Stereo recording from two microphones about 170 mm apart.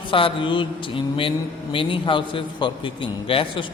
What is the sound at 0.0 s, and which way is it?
Mantra, 30° left (ahead or behind).